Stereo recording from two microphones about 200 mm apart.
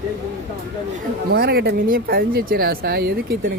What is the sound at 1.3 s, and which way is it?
Speech, 50° right (ahead or behind).